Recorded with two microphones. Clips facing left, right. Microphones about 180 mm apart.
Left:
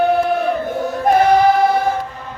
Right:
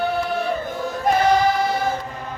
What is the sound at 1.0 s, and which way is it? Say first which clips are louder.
Choir: left 5 dB; 60° left (ahead or behind).